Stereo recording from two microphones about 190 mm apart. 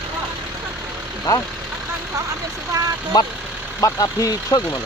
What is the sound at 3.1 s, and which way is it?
Speech, 20° left (ahead or behind).